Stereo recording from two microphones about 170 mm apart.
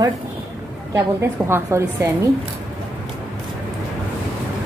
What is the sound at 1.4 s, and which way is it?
Speech, 15° right (ahead or behind).